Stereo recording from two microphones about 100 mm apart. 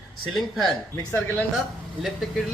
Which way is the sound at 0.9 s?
20° left (ahead or behind).